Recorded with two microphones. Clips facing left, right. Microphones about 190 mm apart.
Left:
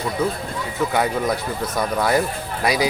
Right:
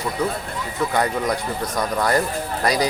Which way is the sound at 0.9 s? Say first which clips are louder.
Even; 5° left (ahead or behind).